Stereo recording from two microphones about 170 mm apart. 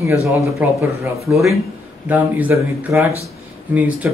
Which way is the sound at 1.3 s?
Centre (ahead or behind).